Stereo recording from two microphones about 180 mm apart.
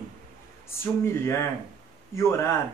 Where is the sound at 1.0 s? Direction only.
15° left (ahead or behind).